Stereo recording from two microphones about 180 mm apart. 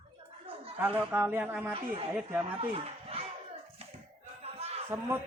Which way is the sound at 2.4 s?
30° right (ahead or behind).